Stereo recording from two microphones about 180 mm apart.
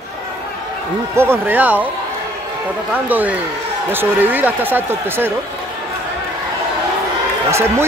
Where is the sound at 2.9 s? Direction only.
10° right (ahead or behind).